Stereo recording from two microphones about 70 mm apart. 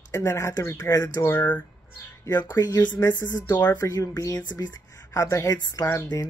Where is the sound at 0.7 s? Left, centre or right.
Left.